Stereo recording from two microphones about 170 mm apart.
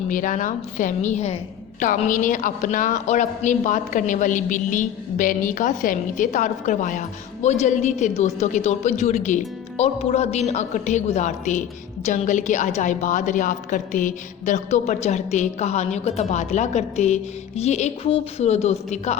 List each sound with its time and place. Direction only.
0.1 s a man's voice: 50° left (ahead or behind)